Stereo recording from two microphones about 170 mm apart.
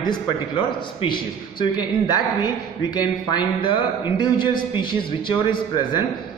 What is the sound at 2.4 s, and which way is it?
A man's voice, 25° left (ahead or behind).